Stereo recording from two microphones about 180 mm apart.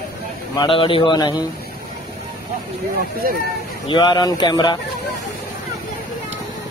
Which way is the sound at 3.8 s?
25° left (ahead or behind).